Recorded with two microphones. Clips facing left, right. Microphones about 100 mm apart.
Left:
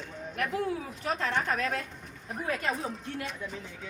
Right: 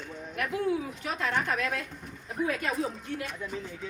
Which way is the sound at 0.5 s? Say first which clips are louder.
Right 3 dB; 35° left (ahead or behind).